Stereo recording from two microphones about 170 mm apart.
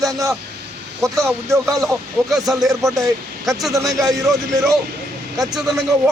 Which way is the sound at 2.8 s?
20° right (ahead or behind).